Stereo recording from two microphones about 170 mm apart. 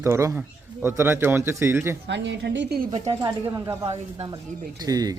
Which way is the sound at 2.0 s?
90° right.